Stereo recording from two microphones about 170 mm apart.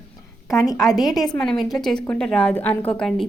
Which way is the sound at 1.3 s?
5° left (ahead or behind).